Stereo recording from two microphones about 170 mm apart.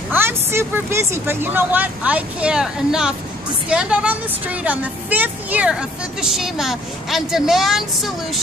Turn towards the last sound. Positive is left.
turn(degrees=0)  # may be behind; listen again after turning